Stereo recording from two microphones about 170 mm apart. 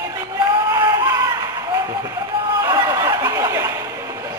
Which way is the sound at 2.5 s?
20° right (ahead or behind).